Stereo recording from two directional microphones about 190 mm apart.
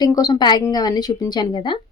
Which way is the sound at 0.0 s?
20° left (ahead or behind).